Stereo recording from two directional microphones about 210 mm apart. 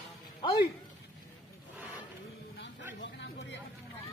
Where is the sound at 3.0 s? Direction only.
55° left (ahead or behind).